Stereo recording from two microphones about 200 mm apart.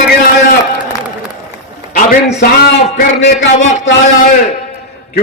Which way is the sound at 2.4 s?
55° left (ahead or behind).